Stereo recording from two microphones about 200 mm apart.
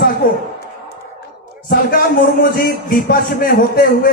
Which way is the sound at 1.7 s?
45° left (ahead or behind).